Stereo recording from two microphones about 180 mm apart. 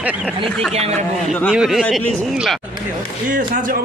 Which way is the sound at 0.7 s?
35° right (ahead or behind).